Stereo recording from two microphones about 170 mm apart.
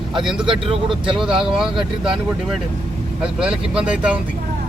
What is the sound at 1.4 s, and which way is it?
Speech, centre (ahead or behind).